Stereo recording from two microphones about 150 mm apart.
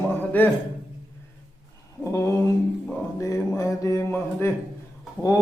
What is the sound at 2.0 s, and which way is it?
Speech, 20° left (ahead or behind).